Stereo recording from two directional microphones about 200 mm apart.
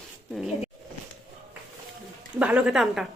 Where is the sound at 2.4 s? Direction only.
5° right (ahead or behind).